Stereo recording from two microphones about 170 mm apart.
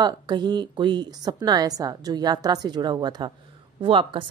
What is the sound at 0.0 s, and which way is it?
Speech, 25° right (ahead or behind).